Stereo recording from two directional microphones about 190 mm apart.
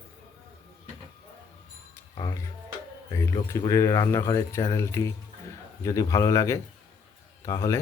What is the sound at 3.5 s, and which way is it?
Speech, 15° left (ahead or behind).